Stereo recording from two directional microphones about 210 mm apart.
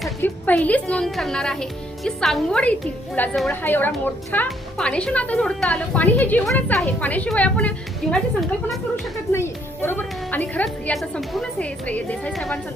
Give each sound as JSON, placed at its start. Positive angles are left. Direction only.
{"t": 0.0, "sound": "a woman's voice", "side_deg": 5}
{"t": 9.3, "sound": "a woman's voice", "side_deg": 10}